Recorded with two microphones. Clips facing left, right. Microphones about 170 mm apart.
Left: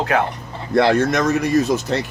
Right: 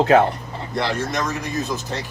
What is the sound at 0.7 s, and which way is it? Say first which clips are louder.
Speech: left 9 dB; 60° left (ahead or behind).